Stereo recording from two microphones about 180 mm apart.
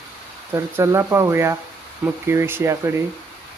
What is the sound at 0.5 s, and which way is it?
Speech, 15° right (ahead or behind).